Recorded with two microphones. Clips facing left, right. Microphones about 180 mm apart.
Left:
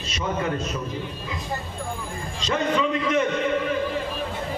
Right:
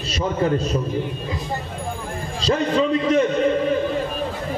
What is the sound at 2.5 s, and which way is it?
Speech, 35° right (ahead or behind).